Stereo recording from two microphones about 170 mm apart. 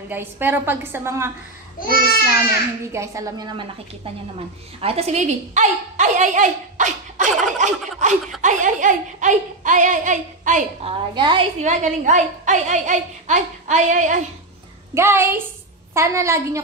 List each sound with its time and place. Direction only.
0.1 s a woman's voice: 10° right (ahead or behind)
2.9 s a woman's voice: 15° right (ahead or behind); by 10.9 s 50° right (ahead or behind)
10.9 s a woman's voice: 30° right (ahead or behind)
11.6 s speech: 45° right (ahead or behind)
15.0 s a woman's voice: 15° right (ahead or behind)